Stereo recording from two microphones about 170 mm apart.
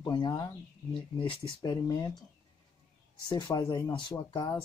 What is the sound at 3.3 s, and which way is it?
Speech, 25° left (ahead or behind).